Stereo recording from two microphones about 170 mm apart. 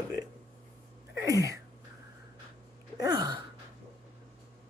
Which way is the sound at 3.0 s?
25° right (ahead or behind).